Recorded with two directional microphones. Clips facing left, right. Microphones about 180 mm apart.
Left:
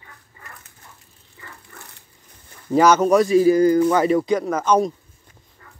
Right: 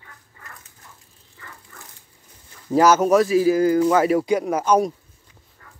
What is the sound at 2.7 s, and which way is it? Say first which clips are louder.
Speech: left 1 dB; 5° right (ahead or behind).